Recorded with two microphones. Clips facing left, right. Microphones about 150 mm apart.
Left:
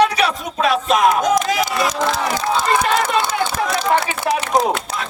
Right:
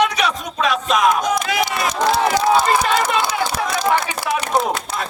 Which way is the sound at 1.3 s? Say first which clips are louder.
Left 3 dB; 40° left (ahead or behind).